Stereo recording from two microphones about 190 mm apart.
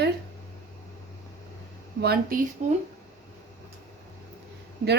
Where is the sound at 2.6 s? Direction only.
35° right (ahead or behind).